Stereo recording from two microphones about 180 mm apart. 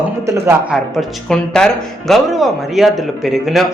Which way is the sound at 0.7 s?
Centre (ahead or behind).